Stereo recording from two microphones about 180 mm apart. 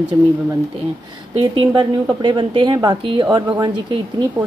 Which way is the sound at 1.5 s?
25° right (ahead or behind).